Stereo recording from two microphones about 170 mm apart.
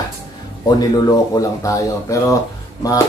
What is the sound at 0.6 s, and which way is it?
Speech, 25° left (ahead or behind).